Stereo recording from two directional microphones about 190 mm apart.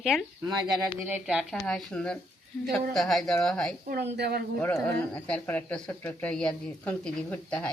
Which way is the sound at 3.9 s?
60° right (ahead or behind).